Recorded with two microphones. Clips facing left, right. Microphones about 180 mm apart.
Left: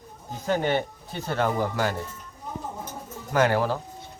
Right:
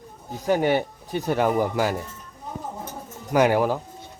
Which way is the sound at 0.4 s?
10° right (ahead or behind).